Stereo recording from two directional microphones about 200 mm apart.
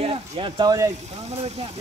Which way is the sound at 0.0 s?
25° right (ahead or behind).